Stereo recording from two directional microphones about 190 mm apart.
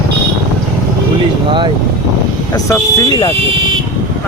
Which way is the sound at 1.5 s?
25° right (ahead or behind).